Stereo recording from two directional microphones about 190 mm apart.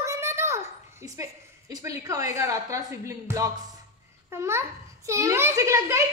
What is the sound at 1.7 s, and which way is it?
A child's voice, 20° right (ahead or behind).